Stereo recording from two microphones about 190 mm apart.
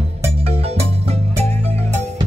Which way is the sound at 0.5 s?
30° right (ahead or behind).